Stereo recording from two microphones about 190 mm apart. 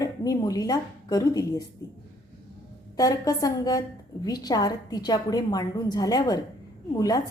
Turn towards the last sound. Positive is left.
turn(degrees=20)  # may be behind; listen again after turning